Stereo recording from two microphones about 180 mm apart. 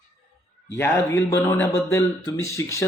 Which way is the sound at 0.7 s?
15° left (ahead or behind).